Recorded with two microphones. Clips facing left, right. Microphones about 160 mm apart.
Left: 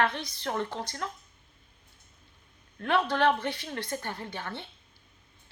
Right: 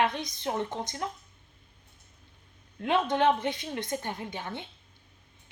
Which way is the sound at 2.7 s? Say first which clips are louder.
Right 1 dB; 20° right (ahead or behind).